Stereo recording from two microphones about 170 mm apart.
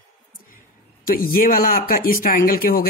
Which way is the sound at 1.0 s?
55° left (ahead or behind).